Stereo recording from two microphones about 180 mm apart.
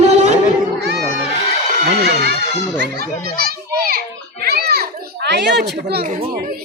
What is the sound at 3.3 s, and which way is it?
Children playing, 60° right (ahead or behind).